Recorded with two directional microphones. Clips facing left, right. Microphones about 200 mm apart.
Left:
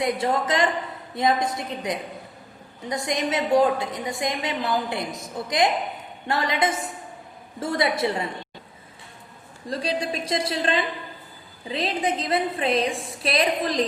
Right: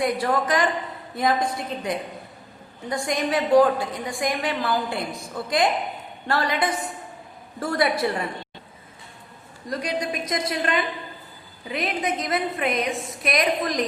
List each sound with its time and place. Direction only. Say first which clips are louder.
0.0 s a woman's voice: right 1 dB; 25° left (ahead or behind)
9.6 s a woman's voice: even; 30° left (ahead or behind)